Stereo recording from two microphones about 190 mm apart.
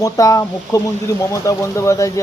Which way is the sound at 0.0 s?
20° left (ahead or behind).